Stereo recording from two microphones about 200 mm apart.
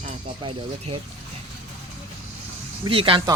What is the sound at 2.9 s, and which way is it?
Speech, 25° right (ahead or behind).